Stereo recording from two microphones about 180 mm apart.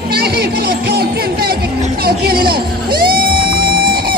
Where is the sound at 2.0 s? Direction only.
60° right (ahead or behind).